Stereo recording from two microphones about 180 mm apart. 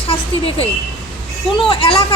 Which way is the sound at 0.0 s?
30° left (ahead or behind).